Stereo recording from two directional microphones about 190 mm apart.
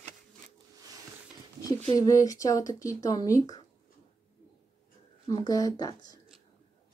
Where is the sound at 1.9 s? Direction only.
20° left (ahead or behind).